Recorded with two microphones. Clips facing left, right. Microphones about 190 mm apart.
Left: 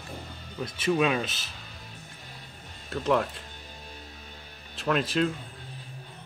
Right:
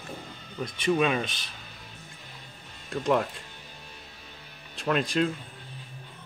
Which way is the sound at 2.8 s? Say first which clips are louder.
Even; centre (ahead or behind).